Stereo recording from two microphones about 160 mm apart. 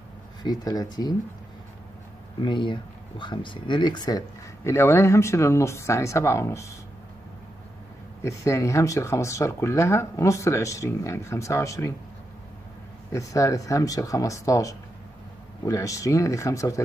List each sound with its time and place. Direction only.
0.4 s speech: 25° left (ahead or behind)
2.4 s speech: 30° left (ahead or behind)
8.2 s speech: 20° left (ahead or behind)
13.1 s speech: 20° left (ahead or behind)